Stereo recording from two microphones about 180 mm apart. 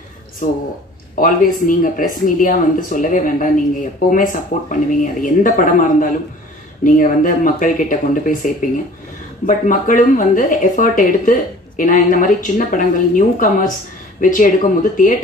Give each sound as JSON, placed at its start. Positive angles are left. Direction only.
{"t": 0.4, "sound": "speech", "side_deg": 45}
{"t": 9.5, "sound": "speech", "side_deg": 45}